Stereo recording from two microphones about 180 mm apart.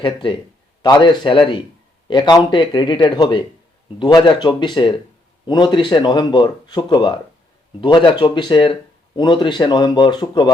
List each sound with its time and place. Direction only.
0.0 s speech: 25° left (ahead or behind)